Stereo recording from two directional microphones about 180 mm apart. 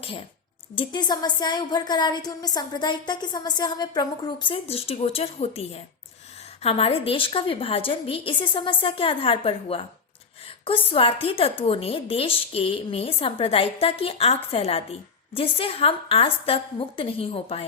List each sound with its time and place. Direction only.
0.8 s a woman's voice: 25° left (ahead or behind)